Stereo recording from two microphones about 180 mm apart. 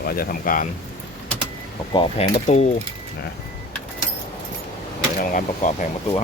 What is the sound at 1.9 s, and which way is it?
Speech, 30° left (ahead or behind).